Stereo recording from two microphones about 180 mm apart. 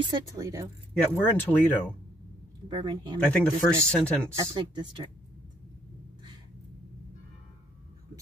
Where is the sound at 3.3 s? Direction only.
5° left (ahead or behind).